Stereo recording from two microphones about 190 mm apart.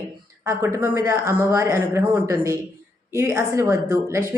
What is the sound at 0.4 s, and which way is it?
Speech, 15° right (ahead or behind).